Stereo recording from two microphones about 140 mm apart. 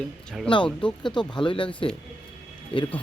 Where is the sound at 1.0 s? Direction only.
35° left (ahead or behind).